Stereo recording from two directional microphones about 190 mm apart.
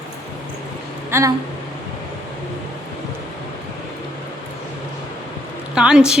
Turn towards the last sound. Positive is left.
turn(degrees=-5)  # may be behind; listen again after turning